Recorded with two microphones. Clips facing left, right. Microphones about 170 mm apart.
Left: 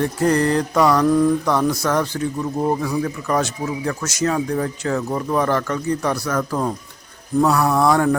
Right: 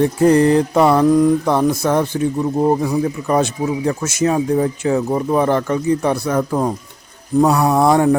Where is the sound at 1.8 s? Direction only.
15° right (ahead or behind).